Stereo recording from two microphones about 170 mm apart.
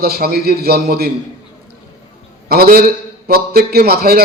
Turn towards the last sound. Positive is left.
turn(degrees=-65)  # may be behind; listen again after turning